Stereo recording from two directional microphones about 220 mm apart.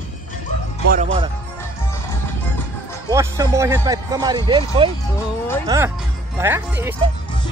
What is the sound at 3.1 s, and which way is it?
Speech, 15° right (ahead or behind).